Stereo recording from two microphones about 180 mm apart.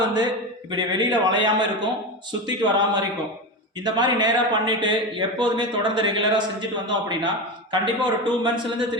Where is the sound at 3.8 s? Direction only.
25° right (ahead or behind).